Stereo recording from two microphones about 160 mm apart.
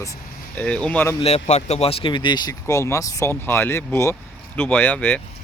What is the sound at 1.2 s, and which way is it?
Speech, 40° left (ahead or behind).